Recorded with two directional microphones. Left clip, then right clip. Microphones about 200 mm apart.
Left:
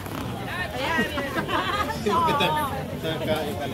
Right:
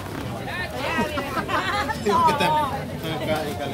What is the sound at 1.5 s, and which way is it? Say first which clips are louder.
Chatter: right 2 dB; 50° right (ahead or behind).